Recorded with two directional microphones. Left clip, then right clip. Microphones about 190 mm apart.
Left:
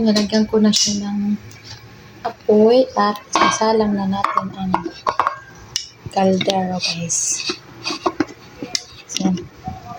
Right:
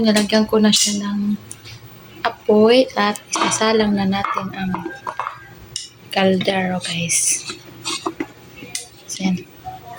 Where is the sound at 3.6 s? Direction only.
5° right (ahead or behind).